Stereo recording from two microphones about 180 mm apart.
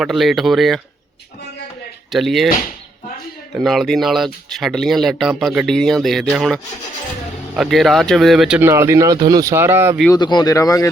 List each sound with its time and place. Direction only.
0.0 s speech: centre (ahead or behind)
2.1 s speech: centre (ahead or behind)
3.5 s speech: centre (ahead or behind)
10.1 s speech: 25° left (ahead or behind)